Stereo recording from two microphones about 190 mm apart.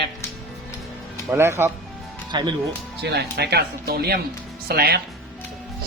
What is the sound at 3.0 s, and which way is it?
Speech, 60° right (ahead or behind).